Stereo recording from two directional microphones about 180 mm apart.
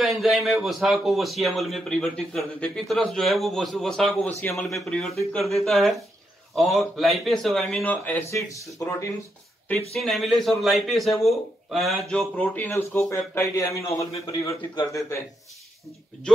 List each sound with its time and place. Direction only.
0.0 s a man's voice: centre (ahead or behind); by 9.1 s 15° left (ahead or behind)
9.9 s a man's voice: centre (ahead or behind)